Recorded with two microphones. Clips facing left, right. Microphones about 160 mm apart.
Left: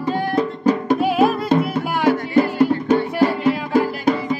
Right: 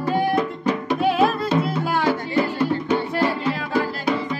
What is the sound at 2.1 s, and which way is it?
Music, 45° left (ahead or behind).